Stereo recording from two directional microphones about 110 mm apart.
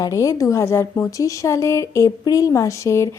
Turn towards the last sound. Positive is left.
turn(degrees=25)  # may be behind; listen again after turning